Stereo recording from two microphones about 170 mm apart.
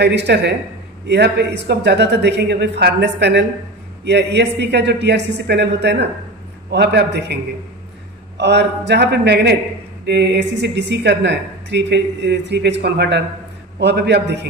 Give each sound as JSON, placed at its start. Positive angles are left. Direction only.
{"t": 0.0, "sound": "a man's voice", "side_deg": -85}
{"t": 8.4, "sound": "a man's voice", "side_deg": -90}